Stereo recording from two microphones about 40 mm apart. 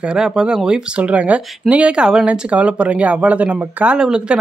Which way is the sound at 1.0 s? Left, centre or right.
Right.